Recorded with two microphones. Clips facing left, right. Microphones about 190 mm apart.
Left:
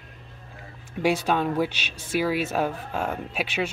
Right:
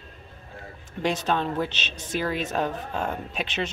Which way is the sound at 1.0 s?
10° left (ahead or behind).